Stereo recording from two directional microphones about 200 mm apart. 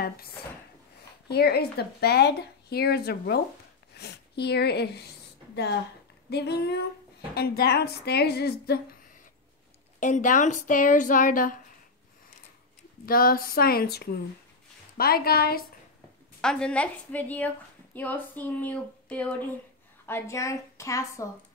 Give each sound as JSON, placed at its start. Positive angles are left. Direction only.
{"t": 1.3, "sound": "speech", "side_deg": 50}
{"t": 6.3, "sound": "a sound", "side_deg": 55}
{"t": 7.3, "sound": "speech", "side_deg": 50}
{"t": 9.9, "sound": "a woman's voice", "side_deg": 40}
{"t": 13.0, "sound": "speech", "side_deg": 45}
{"t": 16.3, "sound": "speech", "side_deg": 5}